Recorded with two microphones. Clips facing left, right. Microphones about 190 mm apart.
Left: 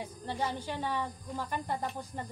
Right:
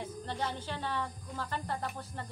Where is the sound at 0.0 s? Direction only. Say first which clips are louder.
Left 1 dB; 10° left (ahead or behind).